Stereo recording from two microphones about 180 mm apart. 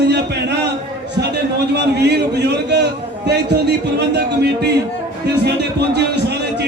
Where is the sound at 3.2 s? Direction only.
70° right (ahead or behind).